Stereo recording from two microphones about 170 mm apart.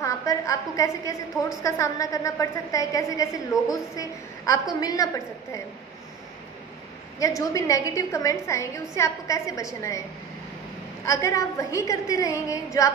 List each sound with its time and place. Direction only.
0.0 s a woman's voice: 20° left (ahead or behind)
7.2 s a woman's voice: 20° left (ahead or behind)
11.1 s a woman's voice: 20° left (ahead or behind)